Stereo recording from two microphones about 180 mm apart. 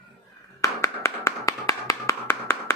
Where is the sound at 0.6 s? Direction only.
15° left (ahead or behind).